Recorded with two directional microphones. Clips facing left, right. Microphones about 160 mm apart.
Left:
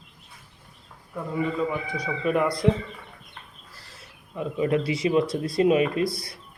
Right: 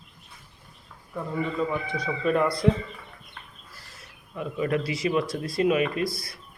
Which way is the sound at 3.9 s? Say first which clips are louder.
Left 1 dB; 25° left (ahead or behind).